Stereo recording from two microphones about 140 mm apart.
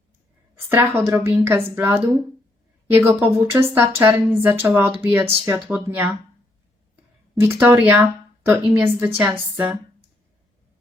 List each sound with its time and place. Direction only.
0.7 s speech: 15° right (ahead or behind)
6.9 s a sound: 15° right (ahead or behind)
8.8 s speech: 15° right (ahead or behind)